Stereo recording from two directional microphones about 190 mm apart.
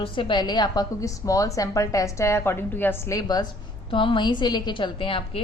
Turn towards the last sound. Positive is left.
turn(degrees=30)  # may be behind; listen again after turning